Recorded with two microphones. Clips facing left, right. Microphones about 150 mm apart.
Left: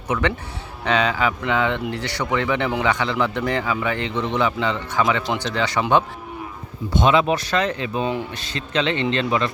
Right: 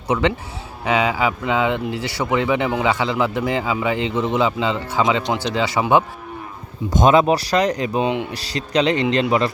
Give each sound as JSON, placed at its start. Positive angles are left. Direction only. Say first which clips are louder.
{"t": 0.1, "sound": "a man's voice", "louder": "right 3 dB", "side_deg": -20}
{"t": 6.9, "sound": "speech", "louder": "right 3 dB", "side_deg": -45}
{"t": 8.0, "sound": "a man's voice", "louder": "right 1 dB", "side_deg": -15}
{"t": 8.3, "sound": "speech", "louder": "right 4 dB", "side_deg": -35}